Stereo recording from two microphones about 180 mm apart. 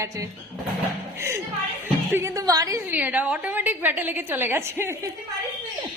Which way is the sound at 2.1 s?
15° right (ahead or behind).